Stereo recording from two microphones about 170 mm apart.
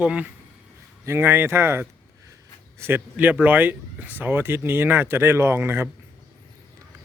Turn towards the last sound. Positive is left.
turn(degrees=-15)  # may be behind; listen again after turning